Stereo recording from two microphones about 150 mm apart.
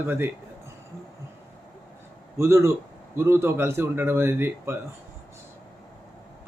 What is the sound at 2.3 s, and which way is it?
Speech, 20° right (ahead or behind).